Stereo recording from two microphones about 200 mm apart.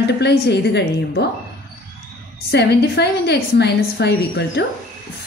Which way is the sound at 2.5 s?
55° left (ahead or behind).